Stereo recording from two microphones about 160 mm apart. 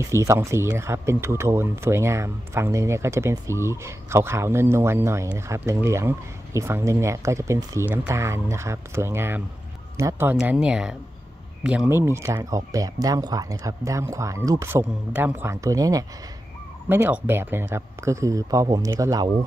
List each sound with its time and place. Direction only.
0.1 s speech: 20° right (ahead or behind)